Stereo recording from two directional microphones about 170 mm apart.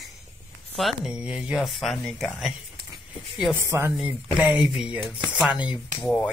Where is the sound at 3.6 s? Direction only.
15° right (ahead or behind).